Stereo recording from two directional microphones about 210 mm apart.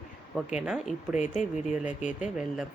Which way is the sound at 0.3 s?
5° right (ahead or behind).